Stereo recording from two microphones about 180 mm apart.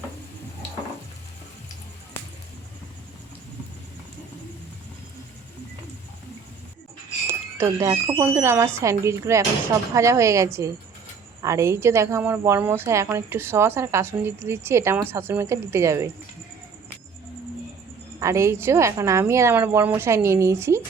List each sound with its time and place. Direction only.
7.3 s speech: 15° right (ahead or behind)
18.2 s speech: 15° right (ahead or behind)